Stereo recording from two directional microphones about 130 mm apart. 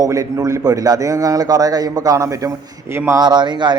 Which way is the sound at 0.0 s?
25° right (ahead or behind).